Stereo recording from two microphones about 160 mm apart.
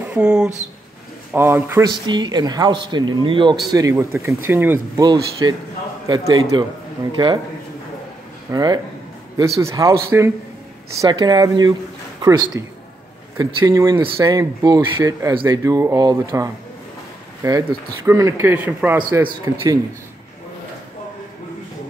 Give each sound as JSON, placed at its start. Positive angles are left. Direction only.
{"t": 0.0, "sound": "speech", "side_deg": -10}
{"t": 2.0, "sound": "speech", "side_deg": -25}
{"t": 3.7, "sound": "speech", "side_deg": -20}
{"t": 5.0, "sound": "speech", "side_deg": -25}
{"t": 8.5, "sound": "speech", "side_deg": -25}